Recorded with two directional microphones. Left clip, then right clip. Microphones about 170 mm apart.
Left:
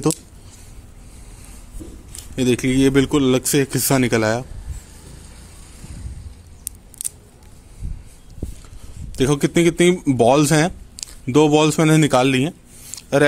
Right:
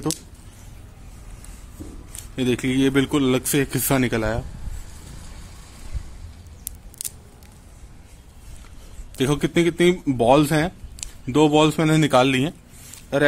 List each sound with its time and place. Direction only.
2.3 s a man's voice: 20° left (ahead or behind)
7.0 s scissors: centre (ahead or behind)
9.1 s speech: 20° left (ahead or behind)